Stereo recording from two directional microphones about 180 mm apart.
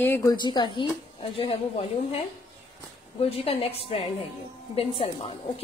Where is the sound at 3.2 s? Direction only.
30° left (ahead or behind).